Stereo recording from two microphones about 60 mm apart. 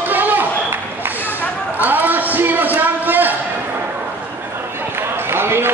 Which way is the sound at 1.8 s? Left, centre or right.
Right.